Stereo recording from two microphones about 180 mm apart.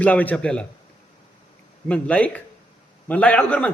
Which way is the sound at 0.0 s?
10° left (ahead or behind).